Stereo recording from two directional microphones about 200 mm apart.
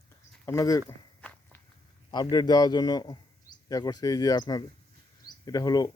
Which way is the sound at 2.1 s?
20° left (ahead or behind).